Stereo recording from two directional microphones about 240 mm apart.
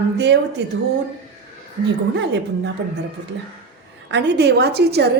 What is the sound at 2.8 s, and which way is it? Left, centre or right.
Speech, right.